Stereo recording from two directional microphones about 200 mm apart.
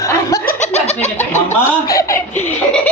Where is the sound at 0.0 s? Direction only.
15° left (ahead or behind).